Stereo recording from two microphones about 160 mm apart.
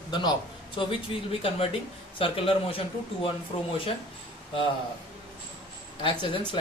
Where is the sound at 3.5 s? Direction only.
35° left (ahead or behind).